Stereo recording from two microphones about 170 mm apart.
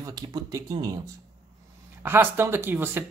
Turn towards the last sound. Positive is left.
turn(degrees=-10)  # may be behind; listen again after turning